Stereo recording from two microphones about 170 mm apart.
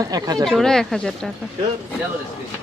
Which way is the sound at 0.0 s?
20° right (ahead or behind).